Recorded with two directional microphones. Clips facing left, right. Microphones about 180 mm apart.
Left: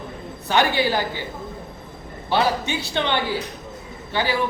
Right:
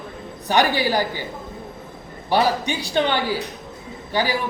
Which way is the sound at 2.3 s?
15° right (ahead or behind).